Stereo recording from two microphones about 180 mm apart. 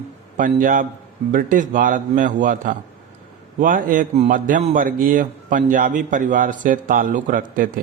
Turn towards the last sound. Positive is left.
turn(degrees=-50)  # may be behind; listen again after turning